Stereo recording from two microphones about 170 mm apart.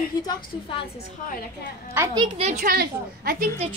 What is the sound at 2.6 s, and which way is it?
Speech, 60° right (ahead or behind).